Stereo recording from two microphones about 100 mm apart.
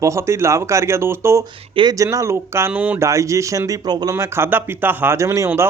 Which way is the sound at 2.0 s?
30° right (ahead or behind).